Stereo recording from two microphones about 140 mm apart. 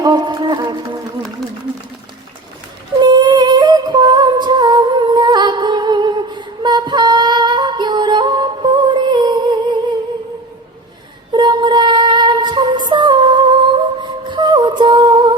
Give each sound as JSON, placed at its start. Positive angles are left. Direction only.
{"t": 0.0, "sound": "music", "side_deg": -30}
{"t": 3.0, "sound": "a sound", "side_deg": -30}
{"t": 11.3, "sound": "music", "side_deg": -35}